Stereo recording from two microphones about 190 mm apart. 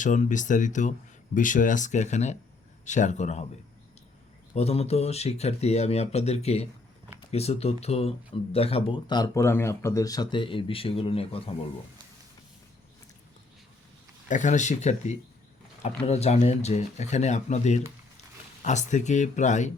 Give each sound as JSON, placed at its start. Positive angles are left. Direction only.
{"t": 0.0, "sound": "speech", "side_deg": 40}
{"t": 4.5, "sound": "speech", "side_deg": 35}
{"t": 14.3, "sound": "speech", "side_deg": 40}